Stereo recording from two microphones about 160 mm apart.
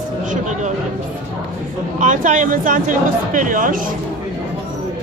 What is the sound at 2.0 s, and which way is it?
Speech, 50° right (ahead or behind).